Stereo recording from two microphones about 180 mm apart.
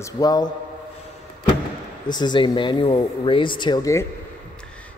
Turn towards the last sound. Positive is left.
turn(degrees=15)  # may be behind; listen again after turning